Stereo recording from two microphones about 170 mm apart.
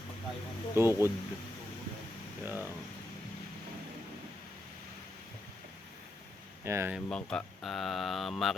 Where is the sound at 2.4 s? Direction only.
10° right (ahead or behind).